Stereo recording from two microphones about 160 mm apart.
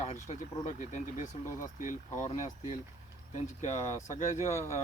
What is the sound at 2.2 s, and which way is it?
Speech, 50° left (ahead or behind).